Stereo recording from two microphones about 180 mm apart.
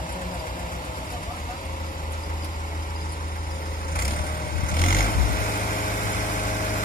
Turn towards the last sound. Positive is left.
turn(degrees=50)  # may be behind; listen again after turning